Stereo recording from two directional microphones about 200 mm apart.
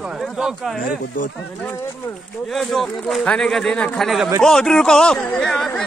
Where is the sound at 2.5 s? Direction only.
Centre (ahead or behind).